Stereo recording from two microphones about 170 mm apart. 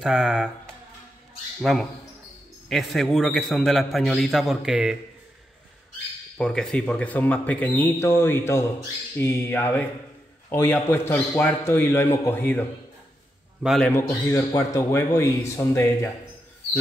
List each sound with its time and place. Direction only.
0.0 s a man's voice: 5° right (ahead or behind)
1.6 s a man's voice: centre (ahead or behind)
6.3 s speech: 5° left (ahead or behind)
13.6 s a man's voice: centre (ahead or behind)
14.2 s speech: 15° left (ahead or behind)